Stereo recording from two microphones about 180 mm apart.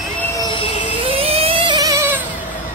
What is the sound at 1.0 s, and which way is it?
Vehicle, 30° right (ahead or behind).